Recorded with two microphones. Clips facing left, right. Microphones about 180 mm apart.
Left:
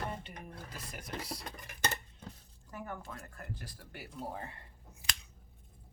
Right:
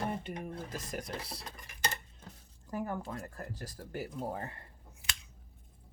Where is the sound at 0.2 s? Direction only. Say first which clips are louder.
Right 7 dB; 45° right (ahead or behind).